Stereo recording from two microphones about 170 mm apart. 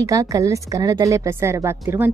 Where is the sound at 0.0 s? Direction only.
20° right (ahead or behind).